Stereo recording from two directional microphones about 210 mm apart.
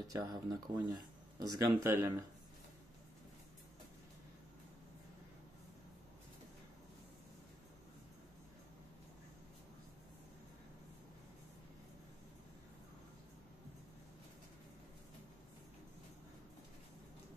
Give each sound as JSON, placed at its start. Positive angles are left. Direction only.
{"t": 0.1, "sound": "speech", "side_deg": -15}